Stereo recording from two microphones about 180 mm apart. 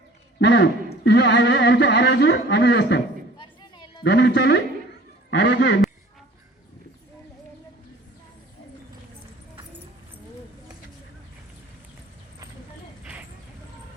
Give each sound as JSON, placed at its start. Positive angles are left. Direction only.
{"t": 0.3, "sound": "a man's voice", "side_deg": 70}
{"t": 3.3, "sound": "a sound", "side_deg": 25}
{"t": 4.0, "sound": "a man's voice", "side_deg": 65}
{"t": 5.4, "sound": "a man's voice", "side_deg": 90}